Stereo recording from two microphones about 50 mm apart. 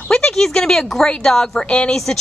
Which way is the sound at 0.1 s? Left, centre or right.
Centre.